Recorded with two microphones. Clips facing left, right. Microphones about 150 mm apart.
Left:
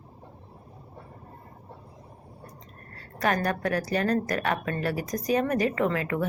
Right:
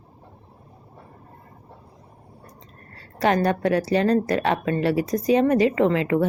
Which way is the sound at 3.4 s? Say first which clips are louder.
Right 6 dB; 25° right (ahead or behind).